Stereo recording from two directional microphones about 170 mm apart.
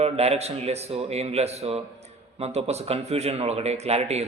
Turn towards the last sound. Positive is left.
turn(degrees=-40)  # may be behind; listen again after turning